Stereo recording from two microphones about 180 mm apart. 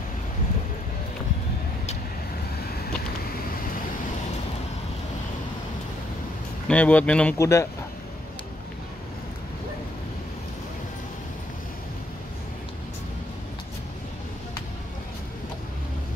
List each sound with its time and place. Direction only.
2.6 s vehicle: 55° left (ahead or behind)
6.7 s speech: 10° left (ahead or behind)